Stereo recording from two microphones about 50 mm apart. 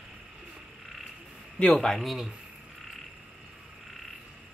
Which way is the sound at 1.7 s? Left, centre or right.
Centre.